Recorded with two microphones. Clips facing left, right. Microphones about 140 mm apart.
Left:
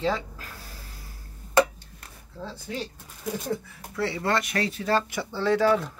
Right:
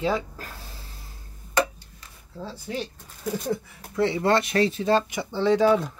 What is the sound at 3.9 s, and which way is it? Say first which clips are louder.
Speech: right 5 dB; 20° right (ahead or behind).